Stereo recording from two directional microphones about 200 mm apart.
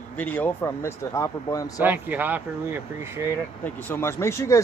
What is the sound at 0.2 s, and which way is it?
Speech, 10° left (ahead or behind).